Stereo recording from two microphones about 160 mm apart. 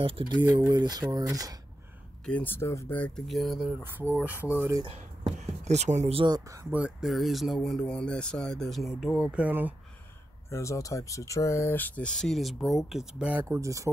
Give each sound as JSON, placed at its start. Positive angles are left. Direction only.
{"t": 0.0, "sound": "speech", "side_deg": -30}
{"t": 2.2, "sound": "speech", "side_deg": 10}
{"t": 3.8, "sound": "speech", "side_deg": -15}
{"t": 4.7, "sound": "speech", "side_deg": -35}
{"t": 6.3, "sound": "speech", "side_deg": -20}
{"t": 6.8, "sound": "speech", "side_deg": 0}
{"t": 10.5, "sound": "speech", "side_deg": 20}